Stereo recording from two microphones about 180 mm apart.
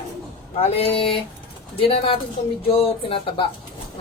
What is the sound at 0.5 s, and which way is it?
A woman's voice, 30° left (ahead or behind).